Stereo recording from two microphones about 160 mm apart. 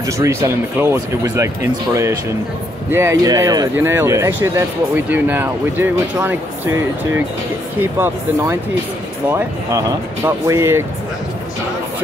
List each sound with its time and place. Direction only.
0.0 s speech: 20° right (ahead or behind)
9.3 s speech: 20° right (ahead or behind)